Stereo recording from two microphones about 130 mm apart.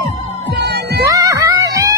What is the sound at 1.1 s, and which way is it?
Music, 25° right (ahead or behind).